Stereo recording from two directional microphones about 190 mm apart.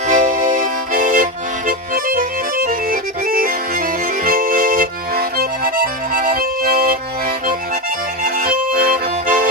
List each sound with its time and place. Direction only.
0.1 s accordion: 45° right (ahead or behind)
8.2 s accordion: 50° right (ahead or behind)